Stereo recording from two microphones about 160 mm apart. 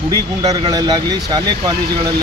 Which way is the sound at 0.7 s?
25° right (ahead or behind).